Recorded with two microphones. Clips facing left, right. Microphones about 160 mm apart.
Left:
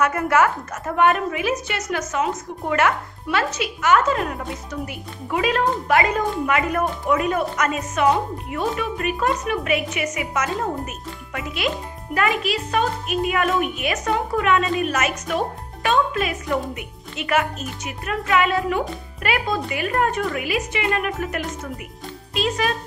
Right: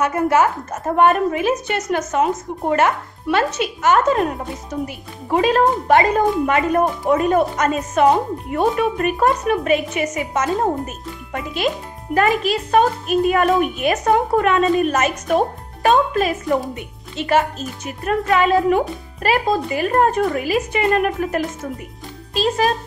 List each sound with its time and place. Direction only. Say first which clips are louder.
0.0 s a woman's voice: right 2 dB; 25° right (ahead or behind)